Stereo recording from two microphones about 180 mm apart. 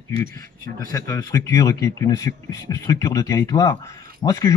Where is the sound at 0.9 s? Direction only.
15° left (ahead or behind).